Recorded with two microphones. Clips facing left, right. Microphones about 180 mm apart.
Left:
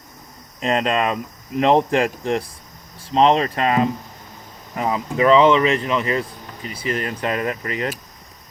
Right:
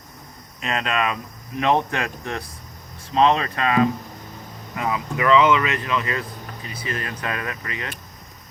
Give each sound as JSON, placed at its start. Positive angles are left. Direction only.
{"t": 0.6, "sound": "speech", "side_deg": 35}